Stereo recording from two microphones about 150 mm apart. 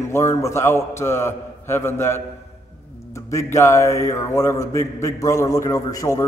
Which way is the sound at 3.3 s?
20° left (ahead or behind).